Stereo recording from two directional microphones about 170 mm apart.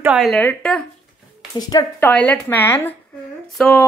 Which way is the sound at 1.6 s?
20° left (ahead or behind).